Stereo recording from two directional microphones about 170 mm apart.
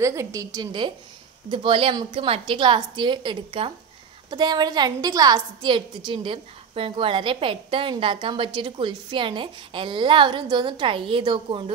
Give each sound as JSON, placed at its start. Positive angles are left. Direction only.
{"t": 0.0, "sound": "a woman's voice", "side_deg": -20}